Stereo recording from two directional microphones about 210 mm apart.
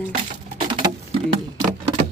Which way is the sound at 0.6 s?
25° right (ahead or behind).